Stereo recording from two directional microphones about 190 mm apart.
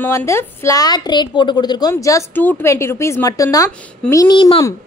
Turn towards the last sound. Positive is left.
turn(degrees=20)  # may be behind; listen again after turning